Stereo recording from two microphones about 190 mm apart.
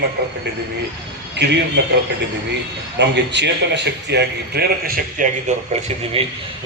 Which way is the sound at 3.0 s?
65° right (ahead or behind).